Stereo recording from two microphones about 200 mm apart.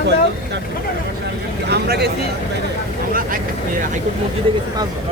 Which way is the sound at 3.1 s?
45° right (ahead or behind).